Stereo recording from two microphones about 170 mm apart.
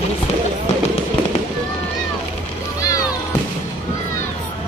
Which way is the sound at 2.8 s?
20° left (ahead or behind).